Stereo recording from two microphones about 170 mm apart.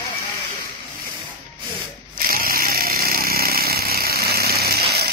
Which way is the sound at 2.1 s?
55° right (ahead or behind).